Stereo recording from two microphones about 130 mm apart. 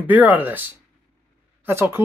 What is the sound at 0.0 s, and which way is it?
Speech, 15° right (ahead or behind).